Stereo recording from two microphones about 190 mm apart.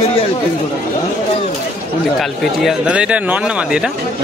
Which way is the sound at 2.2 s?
Centre (ahead or behind).